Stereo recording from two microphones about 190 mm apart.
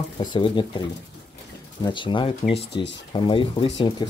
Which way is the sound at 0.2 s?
25° left (ahead or behind).